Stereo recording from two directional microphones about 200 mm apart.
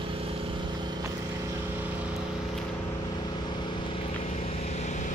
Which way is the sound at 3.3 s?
20° left (ahead or behind).